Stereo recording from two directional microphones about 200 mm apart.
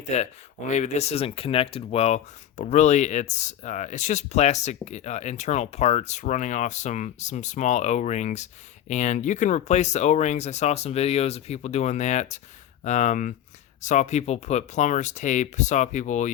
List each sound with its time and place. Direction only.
0.1 s speech: 35° left (ahead or behind)